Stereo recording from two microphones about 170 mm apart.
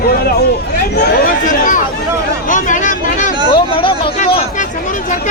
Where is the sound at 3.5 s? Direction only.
30° left (ahead or behind).